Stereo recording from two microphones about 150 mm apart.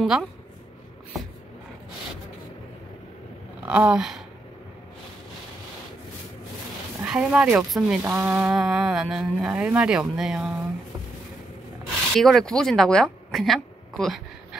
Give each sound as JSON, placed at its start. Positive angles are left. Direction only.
{"t": 0.0, "sound": "a woman's voice", "side_deg": 0}
{"t": 3.6, "sound": "speech", "side_deg": -10}
{"t": 7.0, "sound": "speech", "side_deg": -5}
{"t": 12.2, "sound": "a woman's voice", "side_deg": 5}